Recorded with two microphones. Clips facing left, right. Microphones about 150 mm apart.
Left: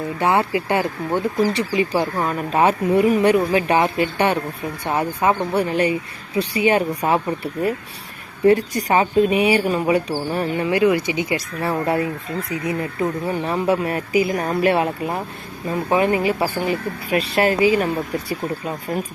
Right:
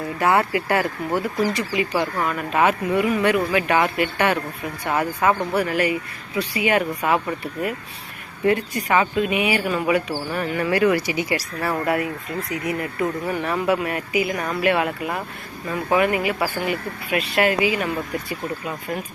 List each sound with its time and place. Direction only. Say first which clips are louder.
0.2 s speech: even; 25° left (ahead or behind)
10.6 s speech: left 1 dB; 20° left (ahead or behind); by 18.8 s 35° left (ahead or behind)